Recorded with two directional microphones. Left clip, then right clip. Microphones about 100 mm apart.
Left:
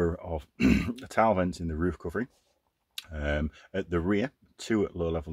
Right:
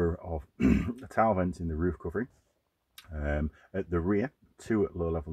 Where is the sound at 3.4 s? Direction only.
30° left (ahead or behind).